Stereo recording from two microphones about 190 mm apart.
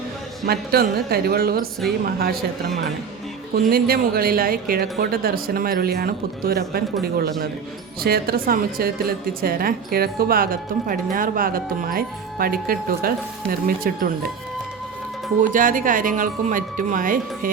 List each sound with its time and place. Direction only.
0.4 s a woman's voice: 55° right (ahead or behind)
15.5 s a woman's voice: 45° right (ahead or behind)